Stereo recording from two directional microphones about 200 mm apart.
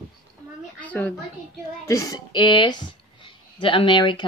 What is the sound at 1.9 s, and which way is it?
Speech, 15° left (ahead or behind).